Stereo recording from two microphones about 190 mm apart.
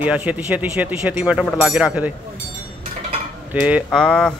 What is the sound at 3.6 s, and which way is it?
Speech, 5° right (ahead or behind).